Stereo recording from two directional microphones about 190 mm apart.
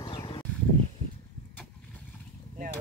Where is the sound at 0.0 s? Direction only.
30° left (ahead or behind).